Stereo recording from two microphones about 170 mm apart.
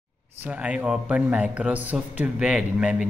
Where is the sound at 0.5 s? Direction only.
10° right (ahead or behind).